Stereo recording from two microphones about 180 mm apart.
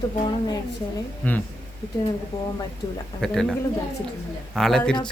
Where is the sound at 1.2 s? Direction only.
10° left (ahead or behind).